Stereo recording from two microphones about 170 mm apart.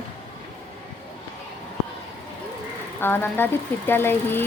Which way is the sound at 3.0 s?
15° left (ahead or behind).